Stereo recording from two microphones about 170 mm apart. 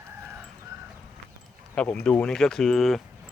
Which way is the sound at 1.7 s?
5° left (ahead or behind).